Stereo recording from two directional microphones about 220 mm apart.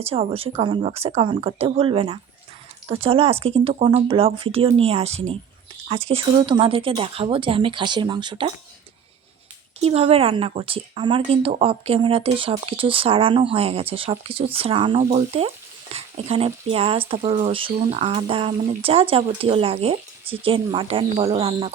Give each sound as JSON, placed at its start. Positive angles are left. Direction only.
{"t": 0.0, "sound": "speech", "side_deg": -25}
{"t": 9.8, "sound": "speech", "side_deg": -25}